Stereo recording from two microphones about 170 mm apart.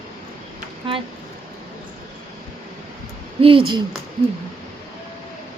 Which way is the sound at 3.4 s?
30° right (ahead or behind).